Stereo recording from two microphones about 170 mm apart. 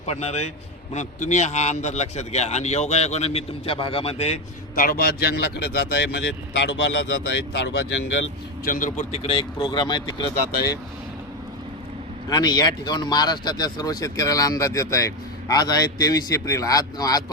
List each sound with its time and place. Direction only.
0.0 s speech: 40° left (ahead or behind)
4.8 s speech: 60° left (ahead or behind); by 7.7 s 90° left
8.6 s speech: 50° left (ahead or behind); by 10.0 s 25° left (ahead or behind)
12.3 s speech: 25° left (ahead or behind)